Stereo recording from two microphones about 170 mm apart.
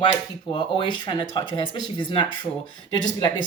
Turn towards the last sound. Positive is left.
turn(degrees=25)  # may be behind; listen again after turning